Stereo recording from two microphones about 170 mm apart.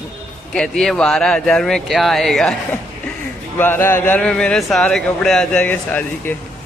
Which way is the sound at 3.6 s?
15° left (ahead or behind).